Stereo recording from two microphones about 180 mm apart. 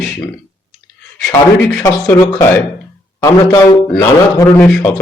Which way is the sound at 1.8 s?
20° left (ahead or behind).